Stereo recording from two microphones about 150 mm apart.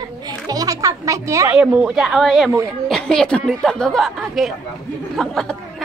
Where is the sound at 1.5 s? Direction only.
5° right (ahead or behind).